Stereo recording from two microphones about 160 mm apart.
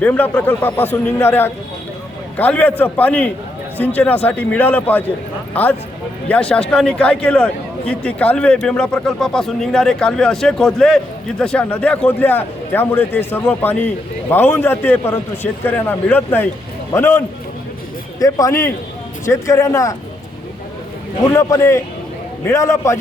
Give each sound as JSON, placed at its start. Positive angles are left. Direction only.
{"t": 0.0, "sound": "speech", "side_deg": 10}
{"t": 6.2, "sound": "speech", "side_deg": 10}
{"t": 21.3, "sound": "speech", "side_deg": 15}